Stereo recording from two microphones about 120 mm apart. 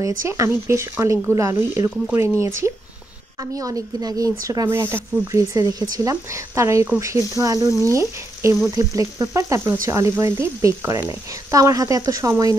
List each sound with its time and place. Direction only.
0.0 s speech: 25° right (ahead or behind)
4.6 s speech: 20° right (ahead or behind)